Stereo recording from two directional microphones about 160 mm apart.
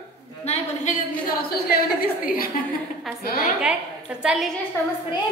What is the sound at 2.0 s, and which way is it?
Speech, 65° left (ahead or behind).